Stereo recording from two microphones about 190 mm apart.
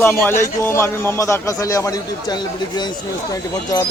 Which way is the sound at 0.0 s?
10° left (ahead or behind).